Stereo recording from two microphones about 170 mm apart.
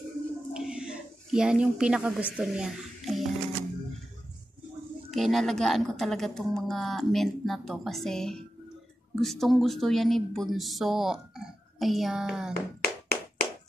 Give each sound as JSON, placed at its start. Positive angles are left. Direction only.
{"t": 0.5, "sound": "a sound", "side_deg": -5}
{"t": 5.1, "sound": "speech", "side_deg": 0}
{"t": 12.8, "sound": "tap", "side_deg": 65}